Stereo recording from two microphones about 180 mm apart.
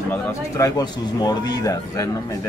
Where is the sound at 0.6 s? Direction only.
20° left (ahead or behind).